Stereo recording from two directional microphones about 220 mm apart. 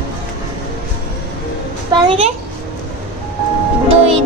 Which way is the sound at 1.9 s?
25° right (ahead or behind).